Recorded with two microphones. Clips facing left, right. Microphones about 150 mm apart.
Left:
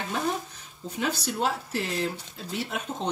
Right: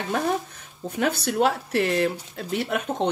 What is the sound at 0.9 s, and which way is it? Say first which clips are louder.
Speech: right 6 dB; 60° right (ahead or behind).